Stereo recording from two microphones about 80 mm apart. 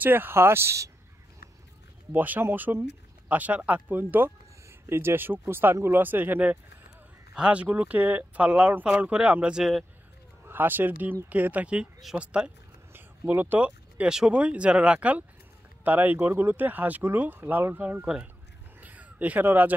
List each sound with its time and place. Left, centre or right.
0.0 s speech: right
2.1 s speech: right
7.3 s speech: centre
10.4 s speech: right
12.9 s a sound: right
14.1 s speech: centre
18.8 s crow: centre